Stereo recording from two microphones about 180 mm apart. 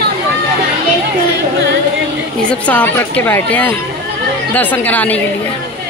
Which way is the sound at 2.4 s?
10° left (ahead or behind).